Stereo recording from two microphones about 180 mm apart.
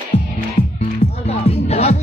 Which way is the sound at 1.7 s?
35° left (ahead or behind).